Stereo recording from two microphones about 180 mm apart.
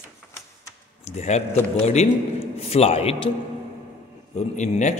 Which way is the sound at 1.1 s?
35° left (ahead or behind).